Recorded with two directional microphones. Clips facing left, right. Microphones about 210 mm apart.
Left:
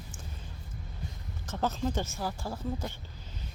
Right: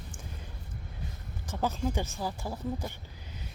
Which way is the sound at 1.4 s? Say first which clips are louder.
Even; 10° right (ahead or behind).